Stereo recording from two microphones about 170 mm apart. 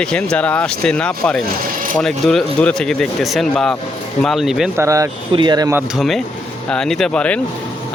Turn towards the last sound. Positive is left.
turn(degrees=5)  # may be behind; listen again after turning